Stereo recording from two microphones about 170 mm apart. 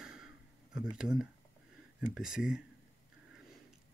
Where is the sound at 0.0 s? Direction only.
5° right (ahead or behind).